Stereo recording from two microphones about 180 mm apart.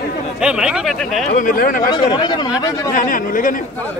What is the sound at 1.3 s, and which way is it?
Speech, 50° left (ahead or behind).